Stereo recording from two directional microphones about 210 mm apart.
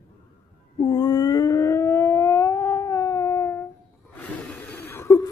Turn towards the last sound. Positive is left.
turn(degrees=15)  # may be behind; listen again after turning